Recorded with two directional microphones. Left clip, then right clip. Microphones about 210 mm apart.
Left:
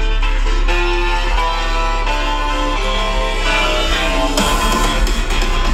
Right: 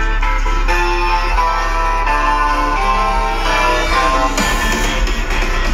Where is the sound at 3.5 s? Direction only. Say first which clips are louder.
Right 1 dB; 25° left (ahead or behind).